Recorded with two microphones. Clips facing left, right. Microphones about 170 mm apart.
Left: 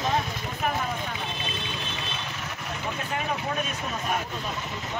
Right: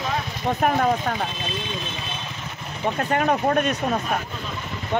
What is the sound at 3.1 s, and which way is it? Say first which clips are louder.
Speech: right 10 dB; 60° right (ahead or behind).